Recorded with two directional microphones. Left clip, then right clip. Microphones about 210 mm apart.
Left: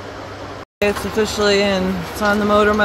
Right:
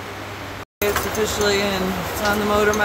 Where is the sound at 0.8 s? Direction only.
30° left (ahead or behind).